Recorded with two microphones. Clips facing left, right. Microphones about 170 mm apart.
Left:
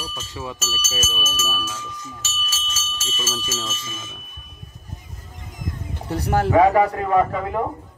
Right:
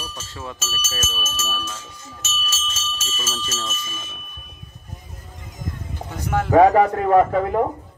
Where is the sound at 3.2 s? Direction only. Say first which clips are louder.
Left 2 dB; 10° left (ahead or behind).